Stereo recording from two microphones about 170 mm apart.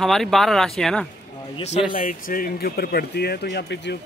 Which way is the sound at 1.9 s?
55° left (ahead or behind).